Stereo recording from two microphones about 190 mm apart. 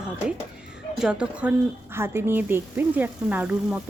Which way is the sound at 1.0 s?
5° right (ahead or behind).